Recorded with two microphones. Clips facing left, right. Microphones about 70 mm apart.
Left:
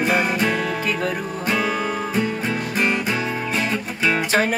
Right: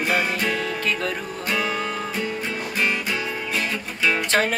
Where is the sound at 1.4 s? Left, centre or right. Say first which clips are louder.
Left 3 dB; left.